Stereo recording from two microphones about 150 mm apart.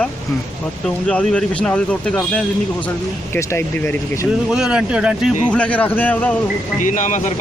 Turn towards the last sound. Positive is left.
turn(degrees=55)  # may be behind; listen again after turning